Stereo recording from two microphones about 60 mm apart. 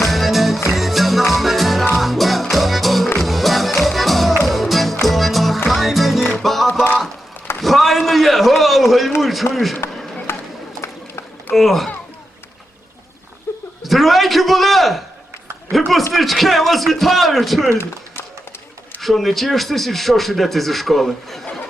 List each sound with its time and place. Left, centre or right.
0.1 s music: centre
7.6 s a sound: centre
9.2 s a man's voice: centre
10.3 s run: left
11.5 s speech: centre
13.5 s a sound: left
13.8 s a man's voice: centre
16.1 s speech: centre
19.0 s speech: centre